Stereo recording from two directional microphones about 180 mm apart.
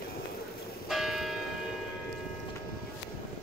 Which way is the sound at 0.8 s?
Centre (ahead or behind).